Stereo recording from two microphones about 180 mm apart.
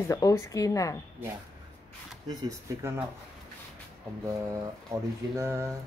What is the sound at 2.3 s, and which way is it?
Speech, 25° right (ahead or behind).